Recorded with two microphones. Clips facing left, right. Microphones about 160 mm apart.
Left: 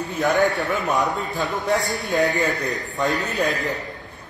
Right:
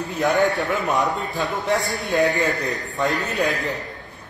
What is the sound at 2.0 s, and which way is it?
Speech, 20° right (ahead or behind).